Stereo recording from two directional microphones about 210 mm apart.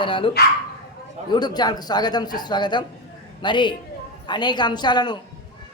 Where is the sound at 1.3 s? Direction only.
20° left (ahead or behind).